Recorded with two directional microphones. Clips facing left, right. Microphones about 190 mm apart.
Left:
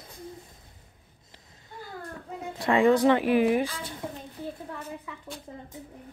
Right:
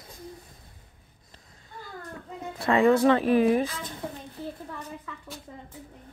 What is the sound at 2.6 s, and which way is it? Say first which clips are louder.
Speech: even; 15° left (ahead or behind).